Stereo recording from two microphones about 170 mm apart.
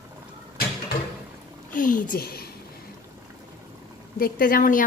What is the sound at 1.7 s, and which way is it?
Speech, 50° left (ahead or behind).